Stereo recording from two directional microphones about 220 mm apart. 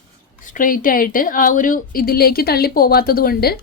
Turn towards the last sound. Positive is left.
turn(degrees=45)  # may be behind; listen again after turning